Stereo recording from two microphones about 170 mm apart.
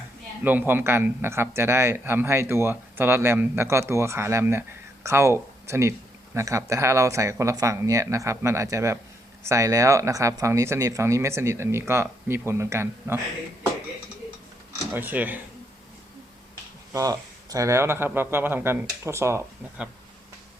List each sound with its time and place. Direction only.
0.4 s speech: 10° right (ahead or behind)
14.9 s speech: 10° right (ahead or behind)
16.9 s speech: 20° right (ahead or behind)